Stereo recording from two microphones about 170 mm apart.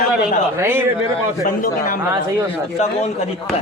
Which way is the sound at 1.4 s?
55° left (ahead or behind).